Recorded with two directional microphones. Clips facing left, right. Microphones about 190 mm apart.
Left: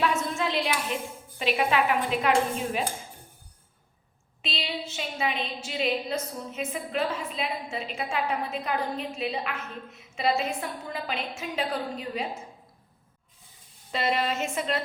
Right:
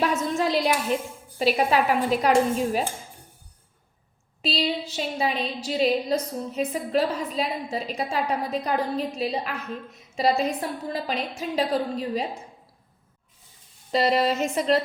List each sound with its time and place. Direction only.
0.0 s a sound: 40° right (ahead or behind)
1.4 s a woman's voice: 40° right (ahead or behind)
4.4 s a woman's voice: 35° right (ahead or behind)
13.9 s a woman's voice: 35° right (ahead or behind)